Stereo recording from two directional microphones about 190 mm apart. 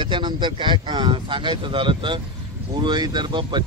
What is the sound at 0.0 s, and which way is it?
Speech, 25° right (ahead or behind).